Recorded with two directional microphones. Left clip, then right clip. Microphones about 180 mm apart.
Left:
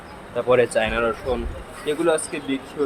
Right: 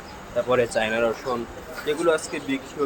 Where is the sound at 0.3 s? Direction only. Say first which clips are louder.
Left 3 dB; 30° left (ahead or behind).